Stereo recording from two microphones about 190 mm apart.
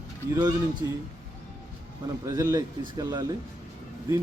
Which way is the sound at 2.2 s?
20° right (ahead or behind).